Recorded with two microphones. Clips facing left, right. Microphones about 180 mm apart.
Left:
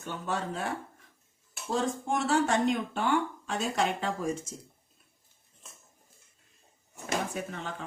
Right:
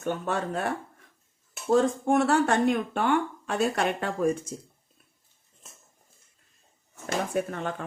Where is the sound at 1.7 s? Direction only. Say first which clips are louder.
Right 8 dB; 60° right (ahead or behind).